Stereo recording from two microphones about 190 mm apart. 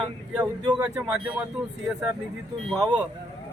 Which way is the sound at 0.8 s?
5° right (ahead or behind).